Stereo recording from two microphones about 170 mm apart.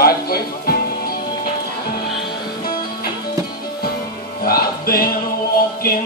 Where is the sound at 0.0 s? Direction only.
65° left (ahead or behind).